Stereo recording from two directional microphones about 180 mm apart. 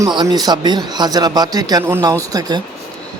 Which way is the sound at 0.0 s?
20° right (ahead or behind).